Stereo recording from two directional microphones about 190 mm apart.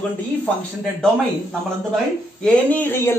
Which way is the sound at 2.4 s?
10° left (ahead or behind).